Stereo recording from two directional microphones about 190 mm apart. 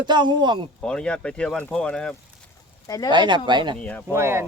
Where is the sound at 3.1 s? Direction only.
25° right (ahead or behind).